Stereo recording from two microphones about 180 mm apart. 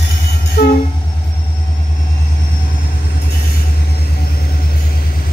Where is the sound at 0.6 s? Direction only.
60° left (ahead or behind).